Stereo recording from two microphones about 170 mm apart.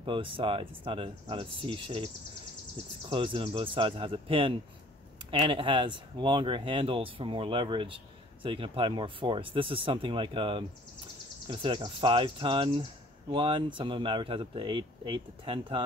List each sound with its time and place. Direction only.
0.0 s speech: 30° right (ahead or behind)
3.1 s speech: 30° right (ahead or behind)